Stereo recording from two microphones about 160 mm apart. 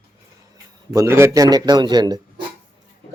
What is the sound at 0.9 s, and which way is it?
A man's voice, 20° right (ahead or behind).